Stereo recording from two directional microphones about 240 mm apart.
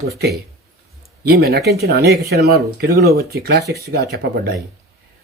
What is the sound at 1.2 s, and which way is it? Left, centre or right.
Speech, right.